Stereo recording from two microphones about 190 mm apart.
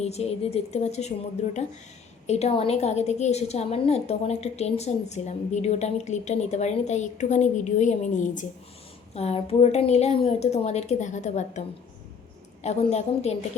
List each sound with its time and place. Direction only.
0.0 s a woman's voice: 35° left (ahead or behind)
2.2 s a woman's voice: 35° left (ahead or behind)
12.6 s a woman's voice: 35° left (ahead or behind)